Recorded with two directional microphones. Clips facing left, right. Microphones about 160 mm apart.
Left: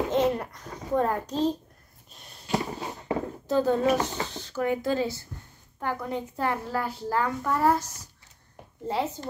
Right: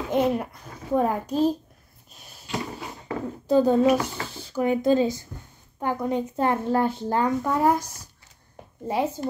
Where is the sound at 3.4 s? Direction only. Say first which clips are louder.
Right 5 dB; 15° right (ahead or behind).